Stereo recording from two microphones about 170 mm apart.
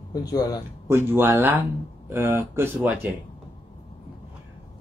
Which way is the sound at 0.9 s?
15° right (ahead or behind).